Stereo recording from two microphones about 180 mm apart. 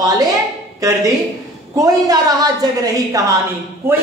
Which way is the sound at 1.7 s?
20° right (ahead or behind).